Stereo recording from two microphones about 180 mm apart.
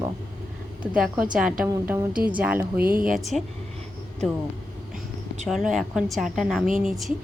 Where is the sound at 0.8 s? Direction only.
5° right (ahead or behind).